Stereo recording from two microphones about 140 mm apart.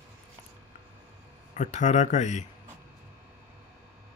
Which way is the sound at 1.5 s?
55° left (ahead or behind).